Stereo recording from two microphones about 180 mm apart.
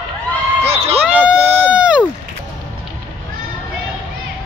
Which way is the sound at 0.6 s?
35° right (ahead or behind).